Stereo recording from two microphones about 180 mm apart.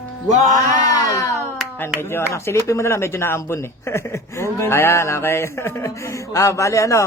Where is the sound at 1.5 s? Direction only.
10° left (ahead or behind).